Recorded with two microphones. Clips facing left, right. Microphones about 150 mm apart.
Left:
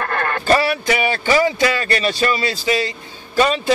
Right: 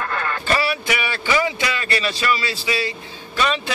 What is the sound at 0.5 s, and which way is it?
Speech, 45° left (ahead or behind).